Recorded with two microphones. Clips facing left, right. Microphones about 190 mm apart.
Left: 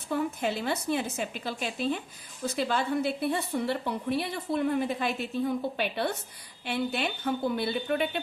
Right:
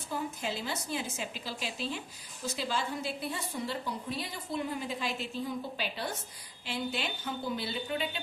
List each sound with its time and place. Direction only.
0.1 s a woman's voice: 60° left (ahead or behind)